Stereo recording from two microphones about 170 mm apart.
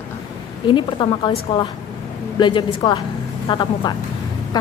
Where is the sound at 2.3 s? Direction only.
30° left (ahead or behind).